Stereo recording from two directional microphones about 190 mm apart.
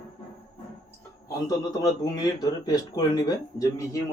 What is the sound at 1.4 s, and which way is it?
Speech, 20° left (ahead or behind).